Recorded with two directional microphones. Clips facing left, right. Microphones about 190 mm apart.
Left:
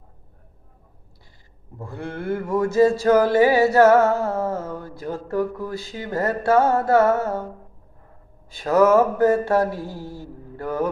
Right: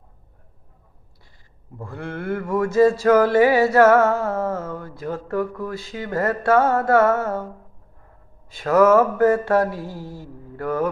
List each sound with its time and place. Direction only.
1.8 s music: 25° left (ahead or behind)
8.6 s music: 25° left (ahead or behind)